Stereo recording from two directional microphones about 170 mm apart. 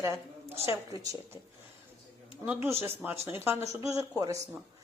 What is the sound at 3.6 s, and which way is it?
Speech, 20° right (ahead or behind).